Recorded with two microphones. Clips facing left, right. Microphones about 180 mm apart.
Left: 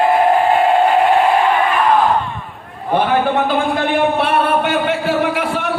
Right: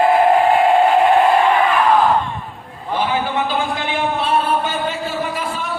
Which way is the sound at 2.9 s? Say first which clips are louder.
Left 5 dB; 55° left (ahead or behind).